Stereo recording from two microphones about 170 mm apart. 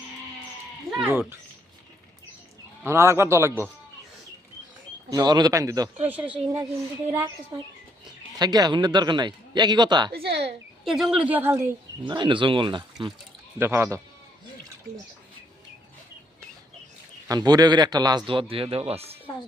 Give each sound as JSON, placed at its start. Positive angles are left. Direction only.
{"t": 0.9, "sound": "a sound", "side_deg": -5}
{"t": 2.8, "sound": "speech", "side_deg": -15}
{"t": 5.1, "sound": "a man's voice", "side_deg": -25}
{"t": 6.1, "sound": "speech", "side_deg": -10}
{"t": 8.4, "sound": "a man's voice", "side_deg": -25}
{"t": 10.1, "sound": "speech", "side_deg": -70}
{"t": 10.8, "sound": "speech", "side_deg": 0}
{"t": 12.0, "sound": "a man's voice", "side_deg": -30}
{"t": 13.6, "sound": "speech", "side_deg": -15}
{"t": 17.2, "sound": "a man's voice", "side_deg": -25}